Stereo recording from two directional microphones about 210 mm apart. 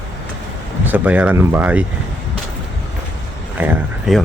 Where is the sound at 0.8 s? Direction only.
10° right (ahead or behind).